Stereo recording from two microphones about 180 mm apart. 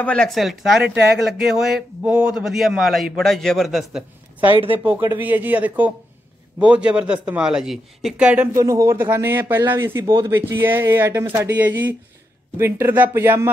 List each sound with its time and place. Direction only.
0.0 s speech: 5° left (ahead or behind)
4.5 s speech: 30° right (ahead or behind)
4.8 s speech: 10° right (ahead or behind)
8.6 s speech: 20° right (ahead or behind)